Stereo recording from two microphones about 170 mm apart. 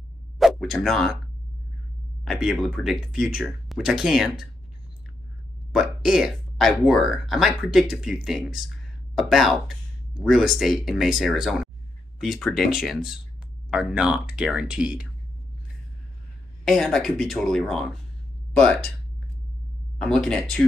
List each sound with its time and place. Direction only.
0.4 s speech: centre (ahead or behind)
2.2 s speech: centre (ahead or behind)
5.7 s speech: centre (ahead or behind)
16.6 s speech: centre (ahead or behind)
20.0 s speech: 5° left (ahead or behind)